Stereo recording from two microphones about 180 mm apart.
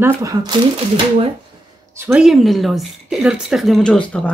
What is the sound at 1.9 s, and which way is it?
A woman's voice, 10° right (ahead or behind).